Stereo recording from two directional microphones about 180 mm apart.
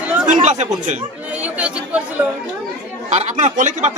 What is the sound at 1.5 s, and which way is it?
Chatter, 5° right (ahead or behind).